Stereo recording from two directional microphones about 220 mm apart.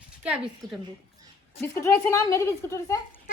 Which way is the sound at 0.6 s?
20° right (ahead or behind).